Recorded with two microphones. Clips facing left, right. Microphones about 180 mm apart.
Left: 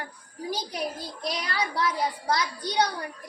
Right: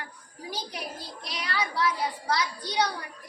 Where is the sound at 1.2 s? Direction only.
40° left (ahead or behind).